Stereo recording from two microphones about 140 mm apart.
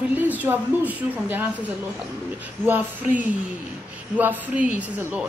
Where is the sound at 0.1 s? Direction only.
10° right (ahead or behind).